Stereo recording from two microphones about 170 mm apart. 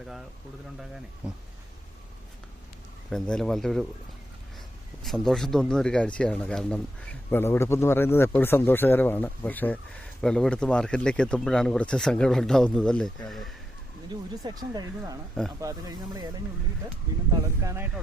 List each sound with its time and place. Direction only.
1.2 s speech: 5° right (ahead or behind)
3.1 s speech: 5° left (ahead or behind)
5.0 s speech: centre (ahead or behind)
14.4 s speech: 25° right (ahead or behind)
17.6 s speech: 15° right (ahead or behind)